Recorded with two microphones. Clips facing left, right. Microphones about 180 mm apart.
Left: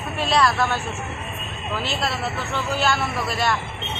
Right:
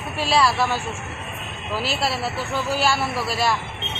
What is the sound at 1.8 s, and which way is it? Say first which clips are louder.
A man's voice: right 2 dB; 5° right (ahead or behind).